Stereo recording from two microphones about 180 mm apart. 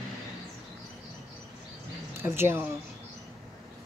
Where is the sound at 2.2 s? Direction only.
15° right (ahead or behind).